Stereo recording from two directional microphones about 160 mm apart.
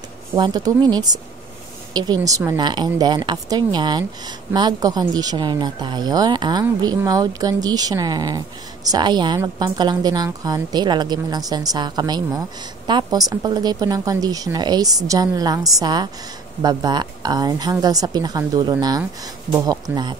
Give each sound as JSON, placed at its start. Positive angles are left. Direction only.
{"t": 0.4, "sound": "a woman's voice", "side_deg": -25}